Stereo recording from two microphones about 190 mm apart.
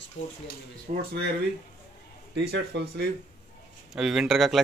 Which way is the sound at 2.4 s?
65° right (ahead or behind).